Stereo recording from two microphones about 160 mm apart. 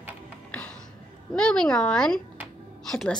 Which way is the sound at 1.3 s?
5° left (ahead or behind).